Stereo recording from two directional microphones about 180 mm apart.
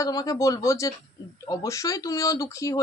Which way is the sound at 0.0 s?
20° left (ahead or behind).